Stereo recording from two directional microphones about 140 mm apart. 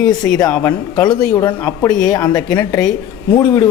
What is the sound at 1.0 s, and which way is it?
Speech, 25° left (ahead or behind).